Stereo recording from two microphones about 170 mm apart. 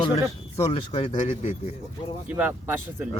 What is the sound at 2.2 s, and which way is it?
Speech, 10° right (ahead or behind).